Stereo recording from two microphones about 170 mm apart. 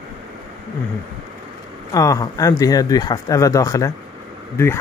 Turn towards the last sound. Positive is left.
turn(degrees=15)  # may be behind; listen again after turning